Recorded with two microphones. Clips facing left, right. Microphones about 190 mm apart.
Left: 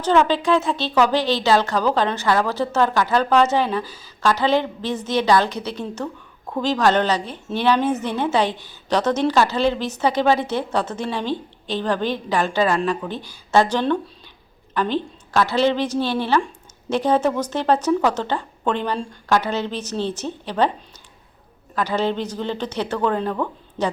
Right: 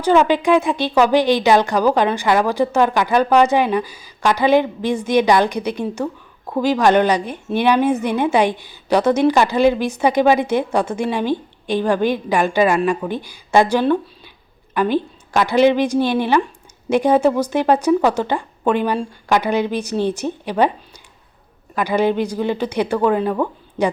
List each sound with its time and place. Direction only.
0.0 s speech: 10° right (ahead or behind)
21.8 s speech: 10° right (ahead or behind)